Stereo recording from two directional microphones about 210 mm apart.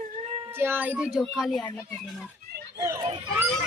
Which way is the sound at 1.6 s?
20° left (ahead or behind).